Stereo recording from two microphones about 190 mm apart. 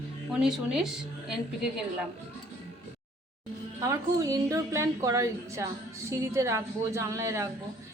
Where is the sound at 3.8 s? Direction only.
15° right (ahead or behind).